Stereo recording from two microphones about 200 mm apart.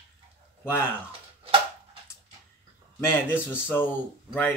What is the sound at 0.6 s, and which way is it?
Speech, 10° left (ahead or behind).